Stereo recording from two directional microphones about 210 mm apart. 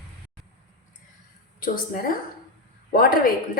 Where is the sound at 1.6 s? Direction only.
40° left (ahead or behind).